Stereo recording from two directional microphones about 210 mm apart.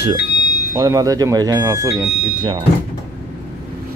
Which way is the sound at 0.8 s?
15° right (ahead or behind).